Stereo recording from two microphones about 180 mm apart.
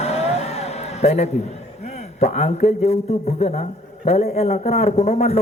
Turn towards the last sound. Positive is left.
turn(degrees=40)  # may be behind; listen again after turning